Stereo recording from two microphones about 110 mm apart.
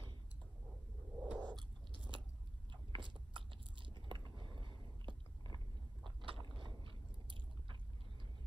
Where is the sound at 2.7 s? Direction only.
45° right (ahead or behind).